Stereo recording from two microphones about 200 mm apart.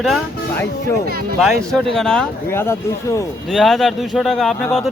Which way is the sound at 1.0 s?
50° right (ahead or behind).